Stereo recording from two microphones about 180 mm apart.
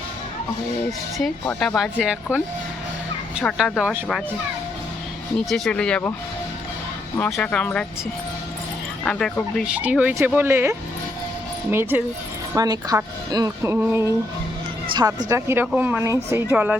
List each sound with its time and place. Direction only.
1.2 s speech: 5° left (ahead or behind)
3.4 s speech: centre (ahead or behind)
5.5 s speech: centre (ahead or behind)
7.2 s speech: 10° left (ahead or behind)
9.0 s speech: 5° left (ahead or behind)
9.7 s speech: 10° right (ahead or behind)